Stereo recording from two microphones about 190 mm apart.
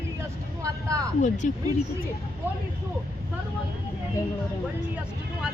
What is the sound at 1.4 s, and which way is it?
Speech, 40° left (ahead or behind).